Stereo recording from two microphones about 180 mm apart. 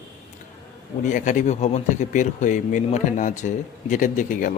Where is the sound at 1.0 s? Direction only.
45° left (ahead or behind).